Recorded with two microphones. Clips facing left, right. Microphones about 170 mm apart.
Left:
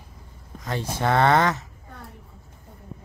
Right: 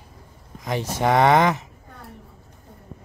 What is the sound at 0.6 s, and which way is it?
Speech, 15° right (ahead or behind).